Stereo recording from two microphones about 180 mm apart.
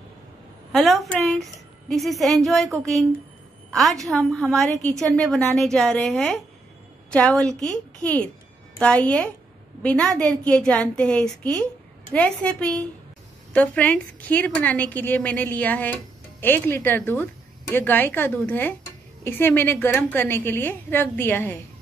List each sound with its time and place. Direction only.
0.7 s a woman's voice: centre (ahead or behind)
4.8 s a woman's voice: 20° right (ahead or behind)
5.1 s a woman's voice: centre (ahead or behind)